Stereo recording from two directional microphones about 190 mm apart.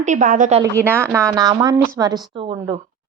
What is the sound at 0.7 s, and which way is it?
A woman's voice, 15° right (ahead or behind).